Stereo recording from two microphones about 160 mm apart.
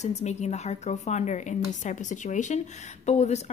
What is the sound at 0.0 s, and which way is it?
A woman's voice, 45° left (ahead or behind).